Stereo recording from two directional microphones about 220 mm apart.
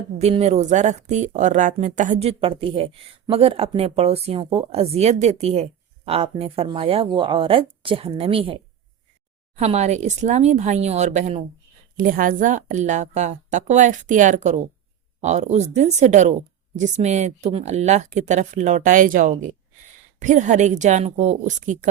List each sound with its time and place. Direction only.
0.2 s speech: 30° right (ahead or behind)
9.6 s speech: 30° right (ahead or behind)